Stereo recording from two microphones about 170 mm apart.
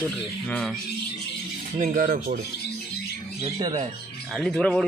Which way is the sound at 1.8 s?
45° right (ahead or behind).